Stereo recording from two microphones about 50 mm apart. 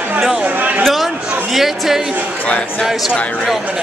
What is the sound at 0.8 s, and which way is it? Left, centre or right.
Speech, centre.